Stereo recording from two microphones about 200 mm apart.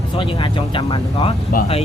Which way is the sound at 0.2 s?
25° left (ahead or behind).